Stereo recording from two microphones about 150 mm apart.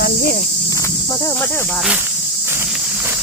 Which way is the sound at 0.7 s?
20° left (ahead or behind).